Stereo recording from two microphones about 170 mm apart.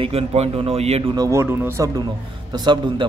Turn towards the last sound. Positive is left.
turn(degrees=-25)  # may be behind; listen again after turning